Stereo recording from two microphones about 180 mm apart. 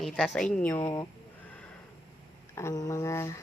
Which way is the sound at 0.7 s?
15° left (ahead or behind).